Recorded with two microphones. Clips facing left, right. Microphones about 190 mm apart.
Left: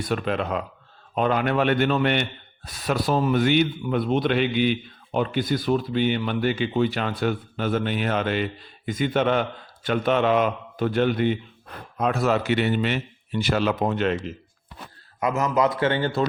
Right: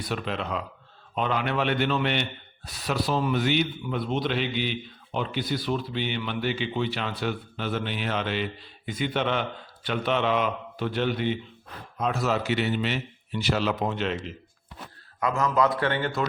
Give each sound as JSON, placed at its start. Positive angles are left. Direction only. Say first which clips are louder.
{"t": 0.0, "sound": "speech", "louder": "left 5 dB", "side_deg": 50}
{"t": 15.2, "sound": "a man's voice", "louder": "left 2 dB", "side_deg": 20}